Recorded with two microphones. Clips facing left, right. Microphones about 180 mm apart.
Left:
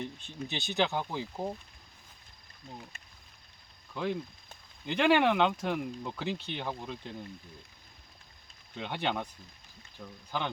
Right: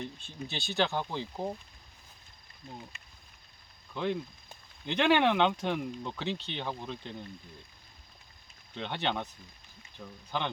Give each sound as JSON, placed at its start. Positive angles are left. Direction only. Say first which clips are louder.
{"t": 0.0, "sound": "speech", "louder": "left 1 dB", "side_deg": 20}
{"t": 3.9, "sound": "speech", "louder": "right 1 dB", "side_deg": 0}
{"t": 8.7, "sound": "speech", "louder": "even", "side_deg": 10}